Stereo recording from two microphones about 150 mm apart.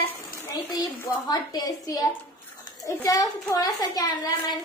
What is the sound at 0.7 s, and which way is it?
A child's voice, 25° left (ahead or behind).